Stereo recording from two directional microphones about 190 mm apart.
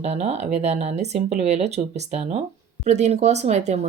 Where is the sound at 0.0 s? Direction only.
35° right (ahead or behind).